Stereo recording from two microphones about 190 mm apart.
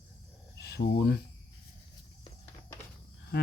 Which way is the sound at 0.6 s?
60° left (ahead or behind).